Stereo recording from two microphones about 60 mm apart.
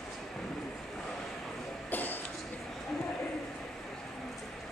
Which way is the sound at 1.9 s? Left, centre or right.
Left.